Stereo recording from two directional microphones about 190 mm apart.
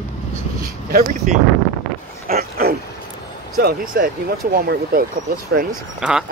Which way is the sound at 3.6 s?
50° right (ahead or behind).